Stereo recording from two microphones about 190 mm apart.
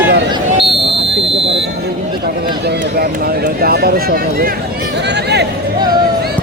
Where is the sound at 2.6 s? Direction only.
50° right (ahead or behind).